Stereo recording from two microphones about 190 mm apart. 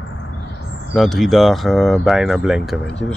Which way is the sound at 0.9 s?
Centre (ahead or behind).